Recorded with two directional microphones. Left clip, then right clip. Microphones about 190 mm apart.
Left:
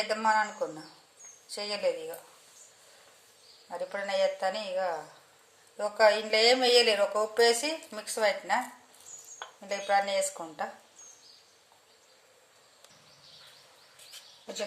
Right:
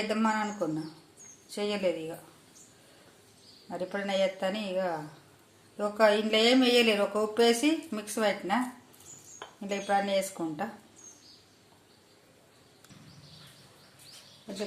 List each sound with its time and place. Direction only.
0.1 s speech: centre (ahead or behind)
3.7 s speech: centre (ahead or behind)
9.6 s speech: 5° left (ahead or behind)